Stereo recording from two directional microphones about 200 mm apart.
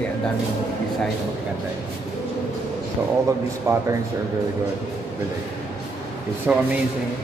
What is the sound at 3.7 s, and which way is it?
Speech, 15° right (ahead or behind).